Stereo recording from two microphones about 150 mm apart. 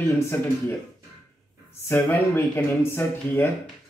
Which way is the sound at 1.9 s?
15° left (ahead or behind).